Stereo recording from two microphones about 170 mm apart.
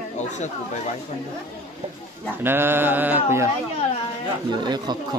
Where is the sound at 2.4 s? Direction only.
15° right (ahead or behind).